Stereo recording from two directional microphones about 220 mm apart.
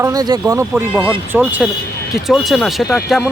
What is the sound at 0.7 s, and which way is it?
Speech, 5° left (ahead or behind).